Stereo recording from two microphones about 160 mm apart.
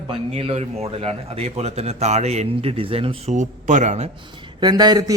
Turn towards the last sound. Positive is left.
turn(degrees=-25)  # may be behind; listen again after turning